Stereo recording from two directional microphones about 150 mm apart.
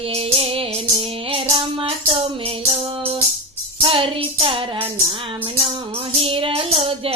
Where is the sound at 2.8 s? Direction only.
35° right (ahead or behind).